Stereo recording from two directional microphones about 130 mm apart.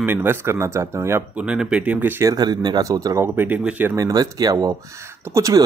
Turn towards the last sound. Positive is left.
turn(degrees=-25)  # may be behind; listen again after turning